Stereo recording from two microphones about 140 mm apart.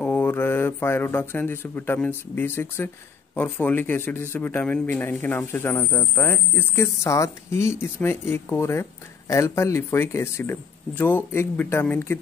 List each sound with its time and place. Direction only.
0.0 s speech: 15° left (ahead or behind)